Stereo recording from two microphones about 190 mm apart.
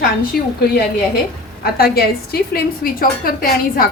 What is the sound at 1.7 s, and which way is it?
A woman's voice, 55° left (ahead or behind).